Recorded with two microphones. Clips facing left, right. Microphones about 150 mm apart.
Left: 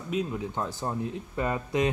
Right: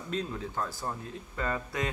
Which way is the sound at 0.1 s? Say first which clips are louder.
Left 4 dB; 15° left (ahead or behind).